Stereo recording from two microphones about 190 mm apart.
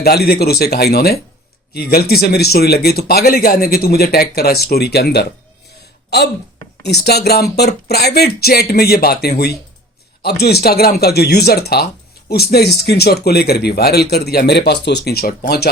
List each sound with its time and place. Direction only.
0.0 s a man's voice: 55° left (ahead or behind)
6.8 s a man's voice: 60° left (ahead or behind)